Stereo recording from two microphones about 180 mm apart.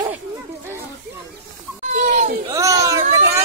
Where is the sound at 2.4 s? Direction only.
15° right (ahead or behind).